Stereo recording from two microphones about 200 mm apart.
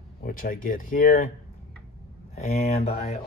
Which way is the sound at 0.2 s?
45° left (ahead or behind).